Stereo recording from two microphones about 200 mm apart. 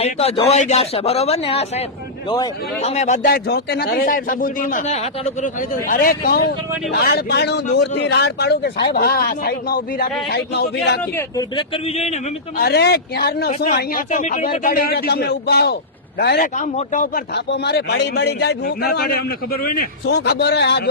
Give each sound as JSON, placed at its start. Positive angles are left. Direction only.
{"t": 0.0, "sound": "speech", "side_deg": 30}
{"t": 2.8, "sound": "speech", "side_deg": 35}
{"t": 3.2, "sound": "a man's voice", "side_deg": 50}
{"t": 11.0, "sound": "a man's voice", "side_deg": 10}
{"t": 11.5, "sound": "speech", "side_deg": 30}
{"t": 12.5, "sound": "a man's voice", "side_deg": 50}
{"t": 13.7, "sound": "a man's voice", "side_deg": 40}
{"t": 16.6, "sound": "speech", "side_deg": 40}
{"t": 17.3, "sound": "a man's voice", "side_deg": 55}